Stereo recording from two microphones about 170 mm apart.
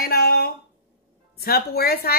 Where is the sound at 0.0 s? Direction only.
65° left (ahead or behind).